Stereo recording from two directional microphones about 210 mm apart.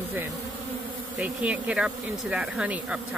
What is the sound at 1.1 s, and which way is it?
Speech, 5° right (ahead or behind).